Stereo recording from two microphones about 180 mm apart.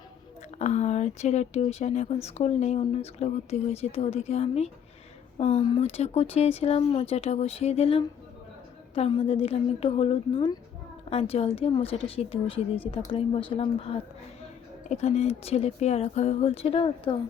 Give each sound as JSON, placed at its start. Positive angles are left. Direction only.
{"t": 0.6, "sound": "speech", "side_deg": 40}